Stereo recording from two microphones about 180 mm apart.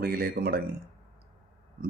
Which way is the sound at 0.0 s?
55° right (ahead or behind).